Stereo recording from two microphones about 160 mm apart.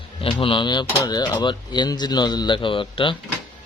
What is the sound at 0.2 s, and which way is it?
Speech, 35° left (ahead or behind).